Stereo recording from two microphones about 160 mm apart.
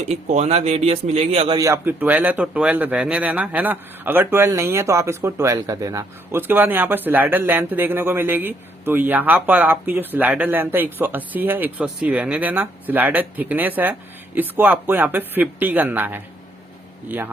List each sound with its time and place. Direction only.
0.0 s a man's voice: 45° right (ahead or behind)
1.5 s speech: 20° right (ahead or behind)